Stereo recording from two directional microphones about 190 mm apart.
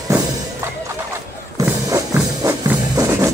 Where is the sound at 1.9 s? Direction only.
15° right (ahead or behind).